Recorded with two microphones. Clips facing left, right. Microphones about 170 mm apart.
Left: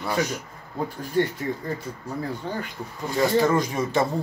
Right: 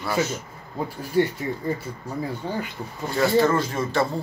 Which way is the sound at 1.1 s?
10° right (ahead or behind).